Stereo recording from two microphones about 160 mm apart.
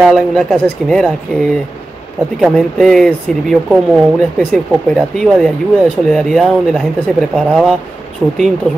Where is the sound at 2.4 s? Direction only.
Centre (ahead or behind).